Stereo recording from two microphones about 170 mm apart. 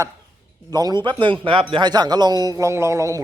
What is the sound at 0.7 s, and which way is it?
A man's voice, 25° right (ahead or behind).